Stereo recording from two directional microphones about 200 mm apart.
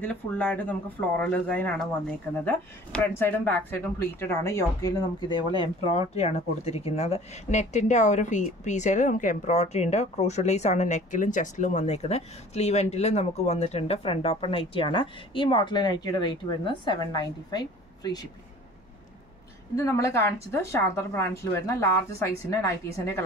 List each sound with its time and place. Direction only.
0.0 s a woman's voice: 5° left (ahead or behind)
19.7 s a woman's voice: 15° left (ahead or behind)